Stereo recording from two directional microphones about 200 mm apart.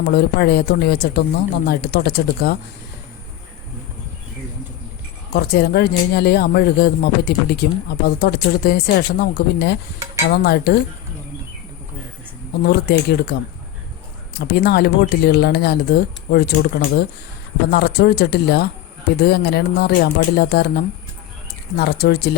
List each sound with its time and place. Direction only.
0.0 s speech: 55° left (ahead or behind)
5.3 s speech: 50° left (ahead or behind)
12.6 s speech: 55° left (ahead or behind)
14.3 s speech: 50° left (ahead or behind)